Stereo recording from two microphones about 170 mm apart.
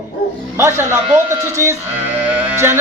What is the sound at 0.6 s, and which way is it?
Speech, 15° right (ahead or behind).